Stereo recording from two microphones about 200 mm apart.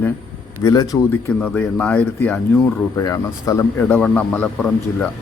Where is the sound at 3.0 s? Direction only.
15° left (ahead or behind).